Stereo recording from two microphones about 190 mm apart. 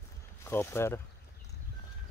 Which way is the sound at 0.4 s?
15° left (ahead or behind).